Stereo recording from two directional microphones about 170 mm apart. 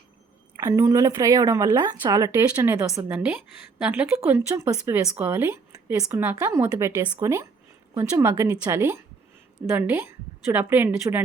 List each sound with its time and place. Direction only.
0.5 s a woman's voice: 20° right (ahead or behind)
3.1 s speech: 10° right (ahead or behind)